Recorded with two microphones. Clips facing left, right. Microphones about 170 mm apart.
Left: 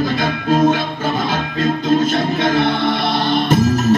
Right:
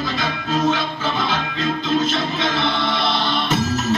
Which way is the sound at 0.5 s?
50° left (ahead or behind).